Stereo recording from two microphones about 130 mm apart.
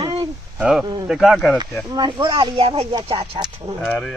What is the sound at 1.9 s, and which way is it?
Speech, 35° right (ahead or behind).